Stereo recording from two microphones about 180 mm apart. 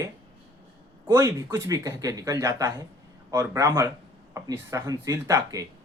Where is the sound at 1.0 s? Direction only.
15° right (ahead or behind).